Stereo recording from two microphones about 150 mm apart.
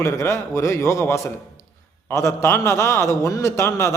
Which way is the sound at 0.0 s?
15° left (ahead or behind).